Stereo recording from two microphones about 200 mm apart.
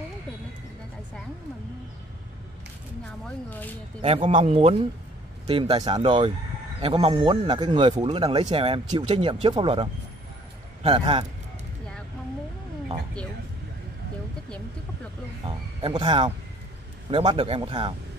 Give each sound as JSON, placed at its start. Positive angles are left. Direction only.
{"t": 3.3, "sound": "speech", "side_deg": 10}
{"t": 4.0, "sound": "speech", "side_deg": -30}
{"t": 15.4, "sound": "speech", "side_deg": -25}